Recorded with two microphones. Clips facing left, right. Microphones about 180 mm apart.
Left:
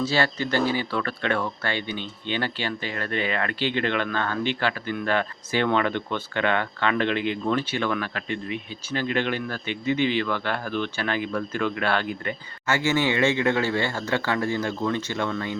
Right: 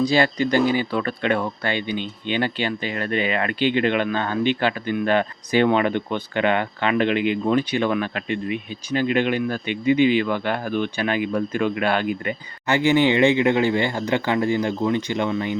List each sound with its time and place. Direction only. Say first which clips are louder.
0.0 s speech: right 5 dB; 15° right (ahead or behind)